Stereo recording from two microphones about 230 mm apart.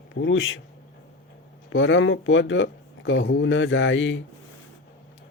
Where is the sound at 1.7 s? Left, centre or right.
Left.